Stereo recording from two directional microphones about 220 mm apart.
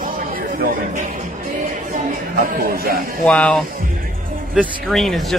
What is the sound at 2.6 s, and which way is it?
Speech, 40° right (ahead or behind).